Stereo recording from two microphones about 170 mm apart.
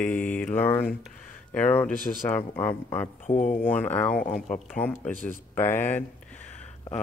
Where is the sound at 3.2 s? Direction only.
45° left (ahead or behind).